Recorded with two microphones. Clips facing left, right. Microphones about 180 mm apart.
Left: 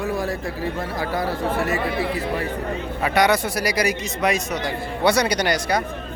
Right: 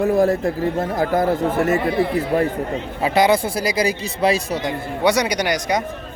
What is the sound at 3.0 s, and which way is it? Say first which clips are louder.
Speech: right 3 dB; 25° right (ahead or behind).